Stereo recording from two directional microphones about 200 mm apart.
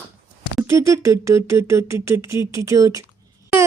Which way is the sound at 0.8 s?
15° right (ahead or behind).